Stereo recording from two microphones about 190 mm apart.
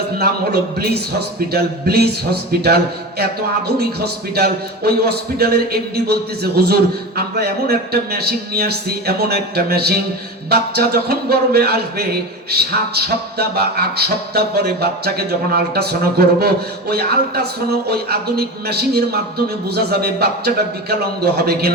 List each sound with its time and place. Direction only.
0.2 s a man's voice: 55° right (ahead or behind)